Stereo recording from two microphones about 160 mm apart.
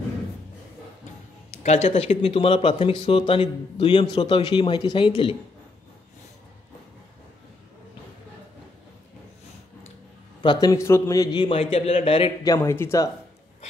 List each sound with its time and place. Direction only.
1.6 s speech: 40° left (ahead or behind)
10.4 s speech: 25° left (ahead or behind)
12.4 s speech: 15° left (ahead or behind)